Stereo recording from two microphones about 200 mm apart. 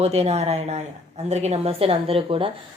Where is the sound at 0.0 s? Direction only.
30° right (ahead or behind).